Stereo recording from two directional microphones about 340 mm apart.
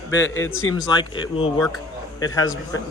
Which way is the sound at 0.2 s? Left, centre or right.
Centre.